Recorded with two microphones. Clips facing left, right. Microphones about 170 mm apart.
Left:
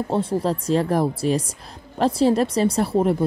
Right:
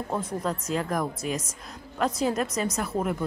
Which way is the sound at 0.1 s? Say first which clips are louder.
Left 7 dB; 30° left (ahead or behind).